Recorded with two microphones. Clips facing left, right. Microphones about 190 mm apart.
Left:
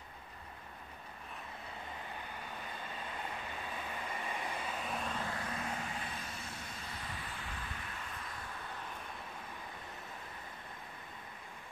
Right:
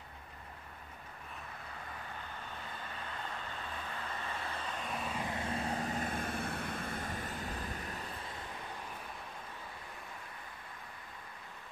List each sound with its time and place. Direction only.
4.0 s vehicle: 15° left (ahead or behind); by 5.2 s 5° right (ahead or behind)
5.2 s vehicle: 25° right (ahead or behind); by 8.1 s 40° right (ahead or behind)